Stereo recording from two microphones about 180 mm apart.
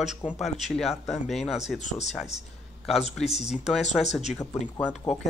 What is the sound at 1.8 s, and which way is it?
Speech, 40° left (ahead or behind).